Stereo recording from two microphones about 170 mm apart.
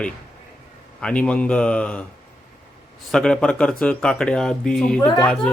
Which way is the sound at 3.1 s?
5° left (ahead or behind).